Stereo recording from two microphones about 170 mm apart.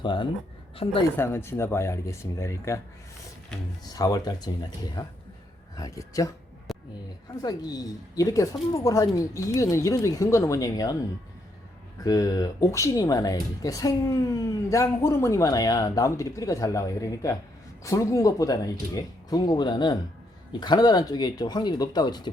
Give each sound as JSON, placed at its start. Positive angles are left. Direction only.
{"t": 0.0, "sound": "speech", "side_deg": 30}
{"t": 1.1, "sound": "speech", "side_deg": 15}
{"t": 3.9, "sound": "speech", "side_deg": 20}
{"t": 5.7, "sound": "speech", "side_deg": 20}
{"t": 6.7, "sound": "a sound", "side_deg": 0}
{"t": 7.4, "sound": "speech", "side_deg": 25}
{"t": 12.0, "sound": "speech", "side_deg": 20}